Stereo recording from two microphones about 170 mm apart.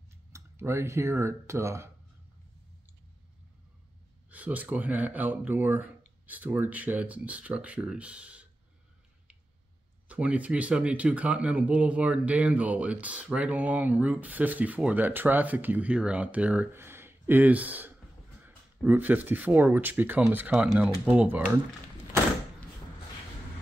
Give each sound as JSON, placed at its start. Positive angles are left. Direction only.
{"t": 0.3, "sound": "speech", "side_deg": -15}
{"t": 4.3, "sound": "speech", "side_deg": -10}
{"t": 10.0, "sound": "speech", "side_deg": -10}